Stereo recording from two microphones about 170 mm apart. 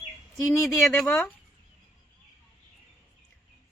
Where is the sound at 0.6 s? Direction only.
Centre (ahead or behind).